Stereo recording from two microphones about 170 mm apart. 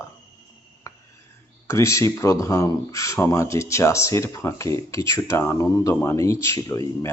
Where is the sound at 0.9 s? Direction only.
15° left (ahead or behind).